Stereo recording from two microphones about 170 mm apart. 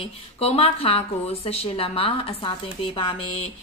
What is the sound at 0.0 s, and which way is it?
A woman's voice, 35° left (ahead or behind).